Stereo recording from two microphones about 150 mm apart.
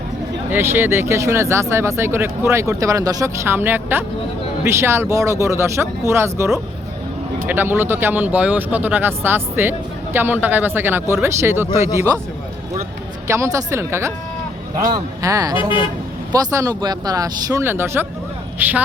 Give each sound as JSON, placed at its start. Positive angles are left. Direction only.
{"t": 0.5, "sound": "speech", "side_deg": -15}
{"t": 13.2, "sound": "speech", "side_deg": -20}
{"t": 15.5, "sound": "speech", "side_deg": 35}
{"t": 16.3, "sound": "speech", "side_deg": -20}